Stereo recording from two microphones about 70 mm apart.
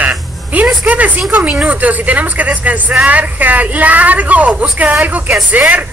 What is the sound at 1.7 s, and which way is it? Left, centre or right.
Speech, right.